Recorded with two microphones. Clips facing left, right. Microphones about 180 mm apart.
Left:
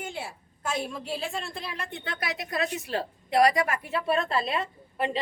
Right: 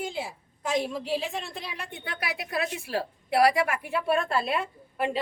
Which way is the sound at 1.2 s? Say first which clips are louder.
Even; 15° right (ahead or behind).